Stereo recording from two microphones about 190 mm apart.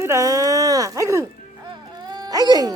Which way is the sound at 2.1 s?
20° right (ahead or behind).